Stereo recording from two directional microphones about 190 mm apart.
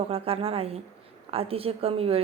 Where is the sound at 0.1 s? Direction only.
30° right (ahead or behind).